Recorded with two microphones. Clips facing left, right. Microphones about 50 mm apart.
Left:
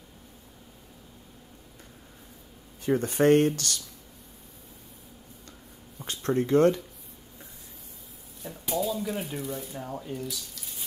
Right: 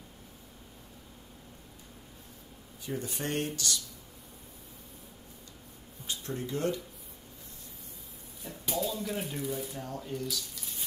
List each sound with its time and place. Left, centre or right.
2.8 s speech: left
6.0 s speech: left
8.5 s speech: centre
9.8 s speech: centre
10.5 s a sound: centre